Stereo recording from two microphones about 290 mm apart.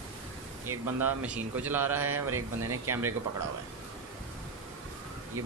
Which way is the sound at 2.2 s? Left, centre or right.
Right.